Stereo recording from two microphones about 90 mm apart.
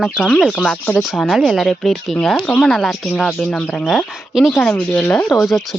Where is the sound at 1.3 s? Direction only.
Centre (ahead or behind).